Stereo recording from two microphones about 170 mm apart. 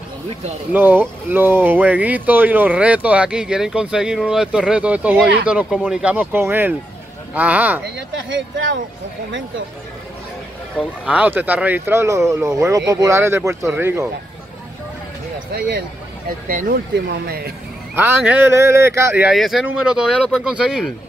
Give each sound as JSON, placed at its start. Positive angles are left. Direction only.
{"t": 0.7, "sound": "speech", "side_deg": -10}
{"t": 8.1, "sound": "speech", "side_deg": -90}
{"t": 11.1, "sound": "speech", "side_deg": -10}
{"t": 15.5, "sound": "speech", "side_deg": -75}
{"t": 16.4, "sound": "speech", "side_deg": -55}
{"t": 17.9, "sound": "speech", "side_deg": -10}
{"t": 19.2, "sound": "speech", "side_deg": 0}